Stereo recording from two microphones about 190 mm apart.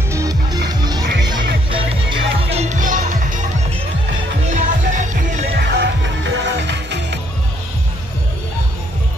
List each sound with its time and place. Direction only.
0.1 s music: 20° right (ahead or behind)
1.7 s music: 25° right (ahead or behind)
2.5 s music: 40° right (ahead or behind)
4.5 s music: 40° right (ahead or behind)
5.6 s music: 60° right (ahead or behind)